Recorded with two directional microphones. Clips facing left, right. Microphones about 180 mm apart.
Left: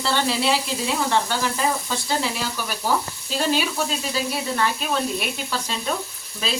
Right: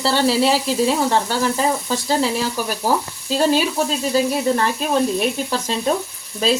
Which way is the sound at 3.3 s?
40° right (ahead or behind).